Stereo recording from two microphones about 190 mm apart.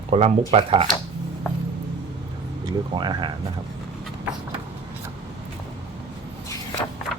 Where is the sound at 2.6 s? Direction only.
20° right (ahead or behind).